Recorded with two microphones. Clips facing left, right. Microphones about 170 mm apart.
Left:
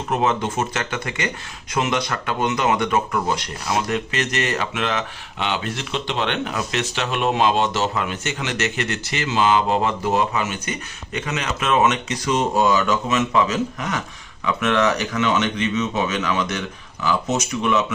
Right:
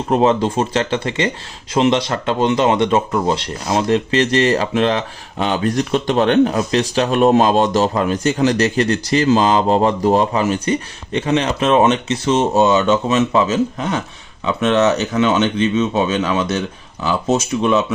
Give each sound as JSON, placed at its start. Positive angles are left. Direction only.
{"t": 0.1, "sound": "speech", "side_deg": -30}